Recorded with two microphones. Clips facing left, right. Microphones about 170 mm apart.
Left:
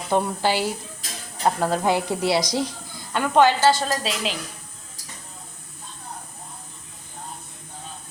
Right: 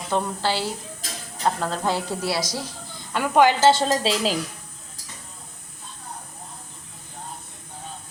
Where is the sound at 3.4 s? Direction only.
25° right (ahead or behind).